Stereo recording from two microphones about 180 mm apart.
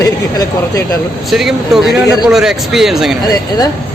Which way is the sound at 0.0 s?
15° left (ahead or behind).